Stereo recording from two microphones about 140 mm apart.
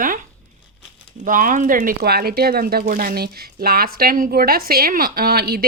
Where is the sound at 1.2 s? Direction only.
75° right (ahead or behind).